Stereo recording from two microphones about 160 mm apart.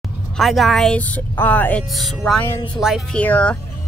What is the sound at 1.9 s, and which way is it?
Speech, centre (ahead or behind).